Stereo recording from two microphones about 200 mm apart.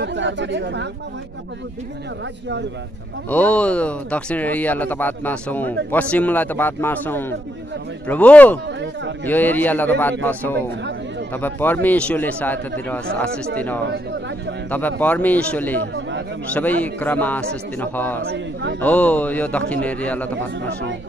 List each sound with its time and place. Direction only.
0.0 s speech: 60° right (ahead or behind)
3.3 s speech: 5° left (ahead or behind)
14.7 s speech: 10° left (ahead or behind)
18.3 s a man's voice: 55° right (ahead or behind)
18.8 s speech: 5° left (ahead or behind)